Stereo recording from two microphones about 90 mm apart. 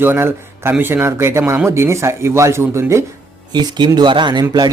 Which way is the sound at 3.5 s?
55° right (ahead or behind).